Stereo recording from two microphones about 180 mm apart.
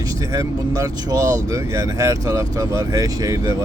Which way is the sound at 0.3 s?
20° right (ahead or behind).